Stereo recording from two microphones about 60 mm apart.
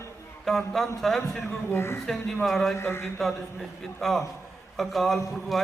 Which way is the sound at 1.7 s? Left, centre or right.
Left.